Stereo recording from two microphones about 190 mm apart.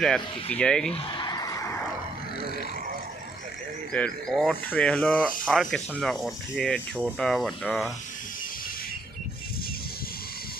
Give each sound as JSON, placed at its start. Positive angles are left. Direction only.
{"t": 0.0, "sound": "speech", "side_deg": 5}
{"t": 0.9, "sound": "a sound", "side_deg": 25}
{"t": 3.9, "sound": "speech", "side_deg": 5}